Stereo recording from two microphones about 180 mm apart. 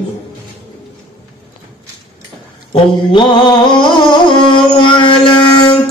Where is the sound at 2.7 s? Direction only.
30° left (ahead or behind).